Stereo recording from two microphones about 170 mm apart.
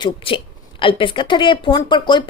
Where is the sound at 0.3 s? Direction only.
30° left (ahead or behind).